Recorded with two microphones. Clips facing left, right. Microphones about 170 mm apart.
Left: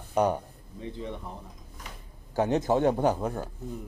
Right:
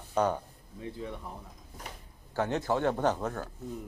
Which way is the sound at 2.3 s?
15° left (ahead or behind).